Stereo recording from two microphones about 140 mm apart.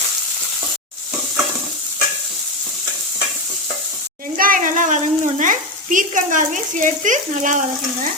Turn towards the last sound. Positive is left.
turn(degrees=-65)  # may be behind; listen again after turning